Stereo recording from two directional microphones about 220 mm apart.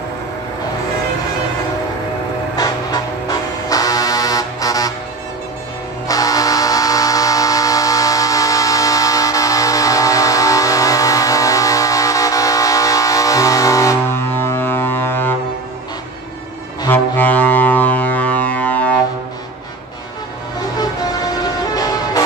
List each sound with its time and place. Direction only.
2.5 s music: 20° left (ahead or behind)
6.0 s a sound: 15° left (ahead or behind)
16.8 s music: 10° left (ahead or behind)
20.7 s music: 15° left (ahead or behind)